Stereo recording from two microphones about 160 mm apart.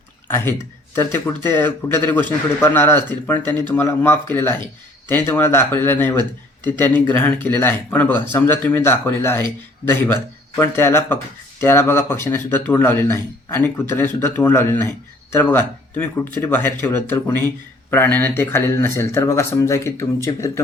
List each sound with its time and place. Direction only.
0.3 s speech: 15° left (ahead or behind)